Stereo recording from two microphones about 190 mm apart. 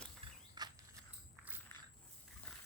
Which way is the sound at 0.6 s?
20° right (ahead or behind).